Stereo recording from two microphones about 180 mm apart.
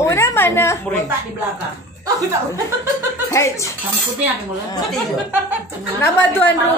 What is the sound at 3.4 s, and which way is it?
Speech, 15° left (ahead or behind).